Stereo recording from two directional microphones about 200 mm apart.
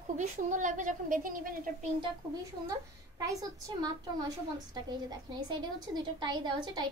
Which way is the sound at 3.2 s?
15° right (ahead or behind).